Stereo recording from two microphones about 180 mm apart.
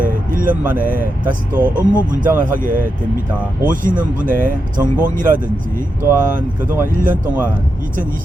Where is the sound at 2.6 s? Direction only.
50° right (ahead or behind).